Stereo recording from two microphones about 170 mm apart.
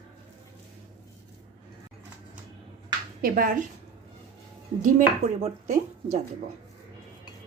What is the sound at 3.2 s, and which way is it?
Speech, 60° right (ahead or behind).